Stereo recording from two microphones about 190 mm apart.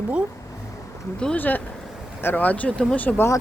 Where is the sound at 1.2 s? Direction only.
5° left (ahead or behind).